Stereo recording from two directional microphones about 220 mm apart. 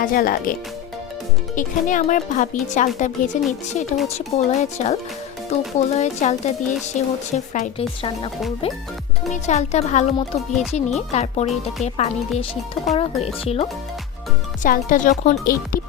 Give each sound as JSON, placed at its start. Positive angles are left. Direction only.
{"t": 0.0, "sound": "speech", "side_deg": 40}
{"t": 1.5, "sound": "speech", "side_deg": 35}
{"t": 9.3, "sound": "speech", "side_deg": 30}